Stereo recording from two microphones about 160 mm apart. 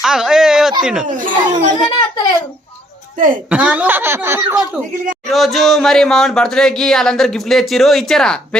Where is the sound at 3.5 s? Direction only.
10° right (ahead or behind).